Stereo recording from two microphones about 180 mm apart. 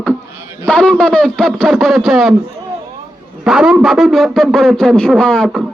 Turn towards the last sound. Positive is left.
turn(degrees=0)  # may be behind; listen again after turning